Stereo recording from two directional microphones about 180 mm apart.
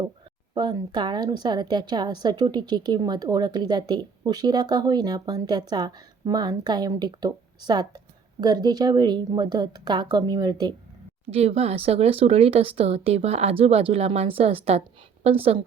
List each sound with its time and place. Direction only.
0.5 s a woman's voice: 25° right (ahead or behind)
11.3 s a woman's voice: 35° right (ahead or behind)